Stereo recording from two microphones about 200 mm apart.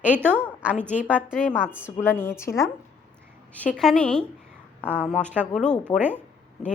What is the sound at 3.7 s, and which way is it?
Speech, 5° left (ahead or behind).